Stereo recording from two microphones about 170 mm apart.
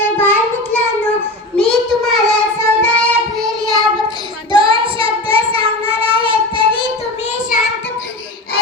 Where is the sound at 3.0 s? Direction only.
5° left (ahead or behind).